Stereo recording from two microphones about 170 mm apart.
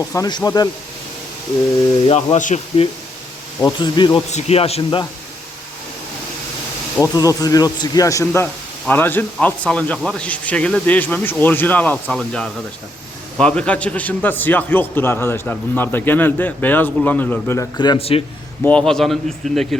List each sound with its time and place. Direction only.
0.0 s speech: 20° left (ahead or behind)
2.0 s speech: 40° left (ahead or behind)
3.6 s speech: 25° left (ahead or behind)
4.3 s speech: 40° left (ahead or behind)
7.0 s a man's voice: 20° left (ahead or behind)
17.7 s speech: 30° left (ahead or behind)
18.6 s a man's voice: 5° left (ahead or behind)